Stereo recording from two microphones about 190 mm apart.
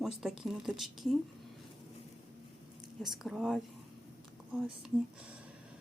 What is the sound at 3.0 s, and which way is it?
Speech, centre (ahead or behind).